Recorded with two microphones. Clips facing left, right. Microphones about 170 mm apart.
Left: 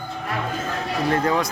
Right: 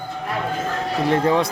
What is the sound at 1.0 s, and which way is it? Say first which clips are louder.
Speech: right 3 dB; 25° right (ahead or behind).